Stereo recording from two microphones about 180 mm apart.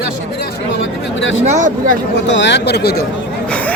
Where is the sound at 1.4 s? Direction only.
45° right (ahead or behind).